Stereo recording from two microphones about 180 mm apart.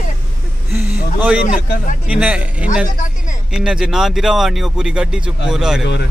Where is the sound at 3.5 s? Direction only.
5° right (ahead or behind).